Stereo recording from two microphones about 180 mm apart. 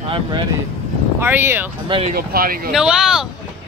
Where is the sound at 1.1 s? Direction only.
10° right (ahead or behind).